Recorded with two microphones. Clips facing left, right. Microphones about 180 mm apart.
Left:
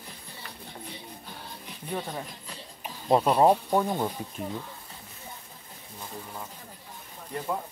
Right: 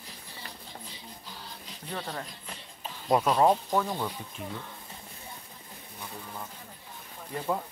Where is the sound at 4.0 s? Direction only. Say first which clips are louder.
Left 4 dB; 45° left (ahead or behind).